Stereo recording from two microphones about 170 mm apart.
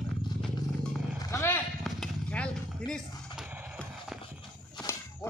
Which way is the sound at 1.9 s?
5° left (ahead or behind).